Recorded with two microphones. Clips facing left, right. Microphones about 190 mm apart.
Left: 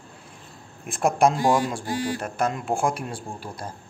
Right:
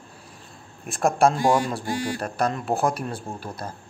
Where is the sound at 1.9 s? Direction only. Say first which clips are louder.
Even; 20° right (ahead or behind).